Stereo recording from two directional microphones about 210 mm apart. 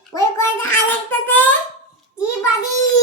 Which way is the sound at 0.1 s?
15° left (ahead or behind).